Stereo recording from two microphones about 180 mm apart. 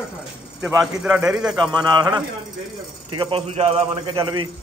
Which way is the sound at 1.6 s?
25° right (ahead or behind).